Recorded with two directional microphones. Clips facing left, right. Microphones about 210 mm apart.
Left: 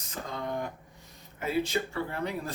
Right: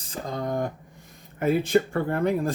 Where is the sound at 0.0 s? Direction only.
35° right (ahead or behind).